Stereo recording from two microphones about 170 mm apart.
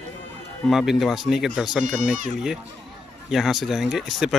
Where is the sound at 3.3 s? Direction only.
Centre (ahead or behind).